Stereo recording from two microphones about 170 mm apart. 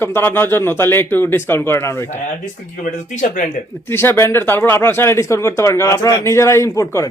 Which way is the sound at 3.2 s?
50° left (ahead or behind).